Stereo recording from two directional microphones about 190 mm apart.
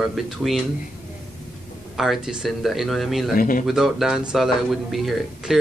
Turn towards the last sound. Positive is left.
turn(degrees=0)  # may be behind; listen again after turning